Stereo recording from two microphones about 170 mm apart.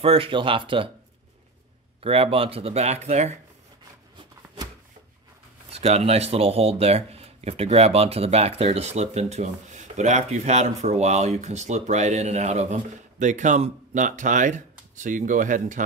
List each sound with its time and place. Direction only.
0.0 s speech: 35° right (ahead or behind)
2.0 s speech: 35° right (ahead or behind)
5.7 s speech: 35° right (ahead or behind)